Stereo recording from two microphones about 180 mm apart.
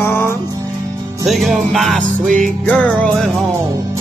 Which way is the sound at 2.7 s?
10° left (ahead or behind).